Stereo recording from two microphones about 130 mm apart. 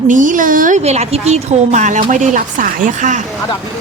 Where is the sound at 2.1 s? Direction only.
85° right.